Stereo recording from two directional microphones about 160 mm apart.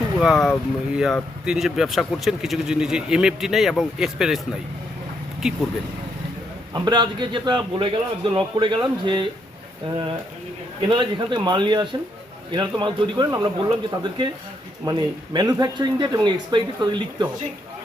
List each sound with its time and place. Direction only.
0.2 s speech: centre (ahead or behind)
6.7 s a man's voice: 25° right (ahead or behind)
10.8 s a man's voice: 30° right (ahead or behind)